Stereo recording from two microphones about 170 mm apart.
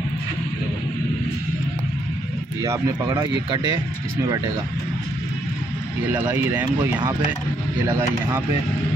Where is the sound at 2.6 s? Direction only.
20° right (ahead or behind).